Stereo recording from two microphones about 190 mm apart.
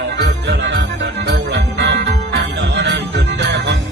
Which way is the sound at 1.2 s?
65° right (ahead or behind).